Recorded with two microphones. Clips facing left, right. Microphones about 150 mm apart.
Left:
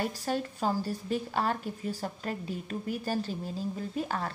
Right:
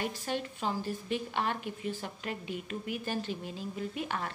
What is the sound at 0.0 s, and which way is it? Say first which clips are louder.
A woman's voice: left 3 dB; 40° left (ahead or behind).